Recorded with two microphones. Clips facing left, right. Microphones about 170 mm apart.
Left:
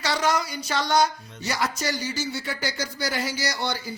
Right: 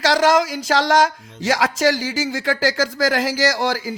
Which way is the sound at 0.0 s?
90° right.